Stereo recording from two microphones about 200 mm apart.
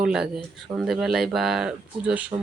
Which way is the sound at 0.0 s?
5° right (ahead or behind).